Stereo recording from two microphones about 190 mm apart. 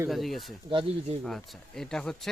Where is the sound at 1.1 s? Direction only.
30° right (ahead or behind).